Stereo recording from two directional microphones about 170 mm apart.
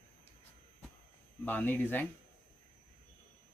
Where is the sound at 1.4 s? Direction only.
10° left (ahead or behind).